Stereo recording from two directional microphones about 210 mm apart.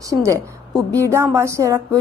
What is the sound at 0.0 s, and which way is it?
A woman's voice, 15° right (ahead or behind).